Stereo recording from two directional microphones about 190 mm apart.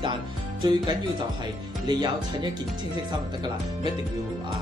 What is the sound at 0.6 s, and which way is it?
Speech, 20° right (ahead or behind).